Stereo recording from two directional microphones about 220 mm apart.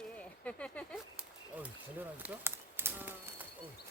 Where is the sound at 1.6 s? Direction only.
5° right (ahead or behind).